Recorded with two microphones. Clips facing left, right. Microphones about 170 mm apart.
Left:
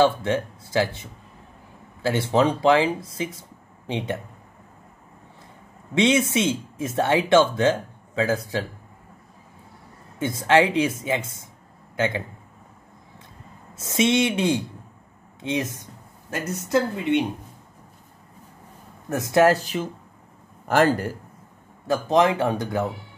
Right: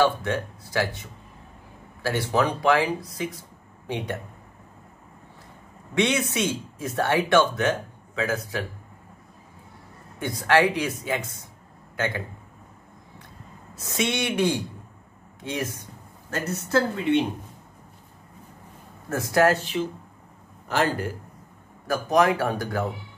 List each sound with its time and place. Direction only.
0.0 s speech: 25° left (ahead or behind)
2.0 s speech: 25° left (ahead or behind)
5.9 s speech: 25° left (ahead or behind)
10.1 s speech: 25° left (ahead or behind)
13.7 s speech: 20° left (ahead or behind)
19.0 s speech: 20° left (ahead or behind); by 19.8 s 35° left (ahead or behind)
20.6 s a man's voice: 50° left (ahead or behind)
21.8 s speech: 25° left (ahead or behind)